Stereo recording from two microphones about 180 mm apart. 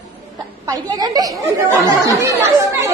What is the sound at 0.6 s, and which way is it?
A woman's voice, 20° right (ahead or behind).